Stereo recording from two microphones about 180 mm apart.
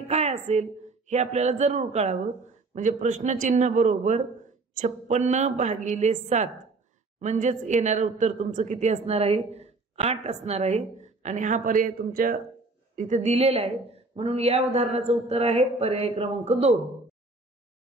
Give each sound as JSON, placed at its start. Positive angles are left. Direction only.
{"t": 0.1, "sound": "a woman's voice", "side_deg": -40}
{"t": 12.9, "sound": "a woman's voice", "side_deg": -45}